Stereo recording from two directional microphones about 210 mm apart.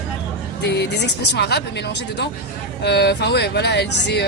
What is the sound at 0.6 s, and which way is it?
Speech, 50° left (ahead or behind).